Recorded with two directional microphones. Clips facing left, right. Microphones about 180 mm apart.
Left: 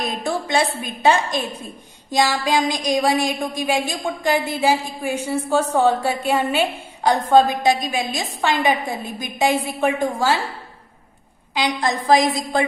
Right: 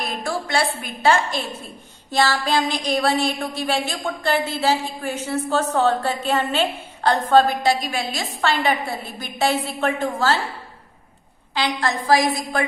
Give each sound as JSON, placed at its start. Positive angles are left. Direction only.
{"t": 0.0, "sound": "a woman's voice", "side_deg": 20}
{"t": 11.5, "sound": "a woman's voice", "side_deg": 15}